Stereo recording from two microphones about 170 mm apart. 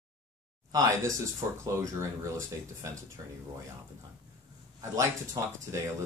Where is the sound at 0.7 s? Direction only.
20° right (ahead or behind).